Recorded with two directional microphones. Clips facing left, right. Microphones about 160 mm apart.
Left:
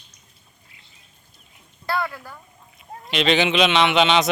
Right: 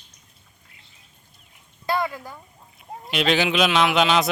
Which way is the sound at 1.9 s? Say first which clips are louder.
Right 1 dB; 15° right (ahead or behind).